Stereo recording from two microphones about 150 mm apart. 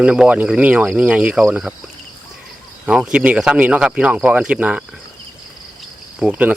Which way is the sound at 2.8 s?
5° right (ahead or behind).